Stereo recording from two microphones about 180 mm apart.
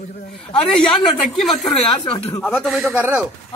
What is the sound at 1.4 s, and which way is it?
Speech, centre (ahead or behind).